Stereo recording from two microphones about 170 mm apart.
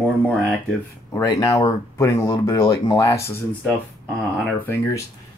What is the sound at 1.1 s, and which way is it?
Speech, 20° left (ahead or behind).